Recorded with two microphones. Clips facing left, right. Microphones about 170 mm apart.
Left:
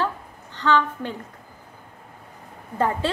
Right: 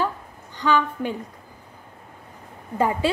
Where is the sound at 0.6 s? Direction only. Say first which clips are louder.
Even; 10° right (ahead or behind).